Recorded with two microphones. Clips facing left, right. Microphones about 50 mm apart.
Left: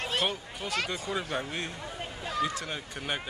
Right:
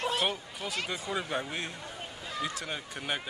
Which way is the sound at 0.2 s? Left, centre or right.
Centre.